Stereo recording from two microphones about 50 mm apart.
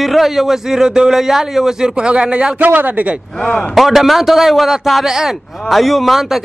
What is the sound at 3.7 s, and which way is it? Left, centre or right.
A man's voice, centre.